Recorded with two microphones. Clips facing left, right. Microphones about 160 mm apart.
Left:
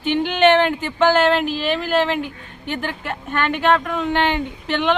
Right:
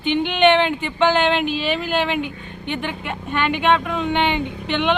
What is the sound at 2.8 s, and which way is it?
Speech, centre (ahead or behind).